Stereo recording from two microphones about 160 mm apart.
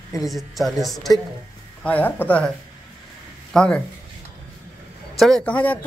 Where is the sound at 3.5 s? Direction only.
5° left (ahead or behind).